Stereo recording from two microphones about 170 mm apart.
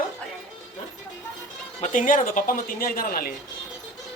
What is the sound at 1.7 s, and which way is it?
Speech, 45° left (ahead or behind).